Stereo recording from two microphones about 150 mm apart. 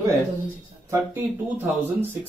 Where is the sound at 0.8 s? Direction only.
15° right (ahead or behind).